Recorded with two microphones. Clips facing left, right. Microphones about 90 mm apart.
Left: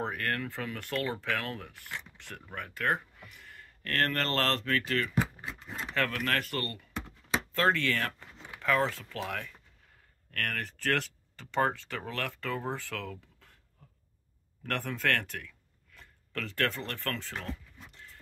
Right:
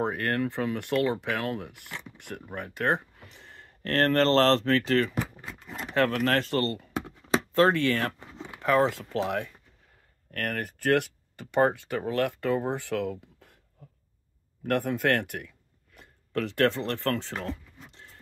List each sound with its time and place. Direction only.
0.0 s speech: 25° right (ahead or behind)
6.4 s speech: 25° right (ahead or behind)
7.5 s a sound: 20° right (ahead or behind)
8.8 s speech: 20° right (ahead or behind)
14.6 s speech: 20° right (ahead or behind)
17.5 s a sound: 25° right (ahead or behind)